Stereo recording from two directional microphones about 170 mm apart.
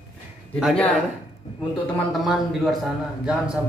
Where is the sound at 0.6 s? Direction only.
5° right (ahead or behind).